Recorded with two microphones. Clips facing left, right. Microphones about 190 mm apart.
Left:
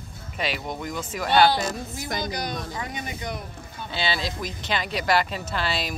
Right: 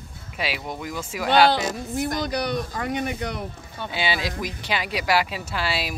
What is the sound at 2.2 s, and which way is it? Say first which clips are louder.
Speech: right 5 dB; 65° right (ahead or behind).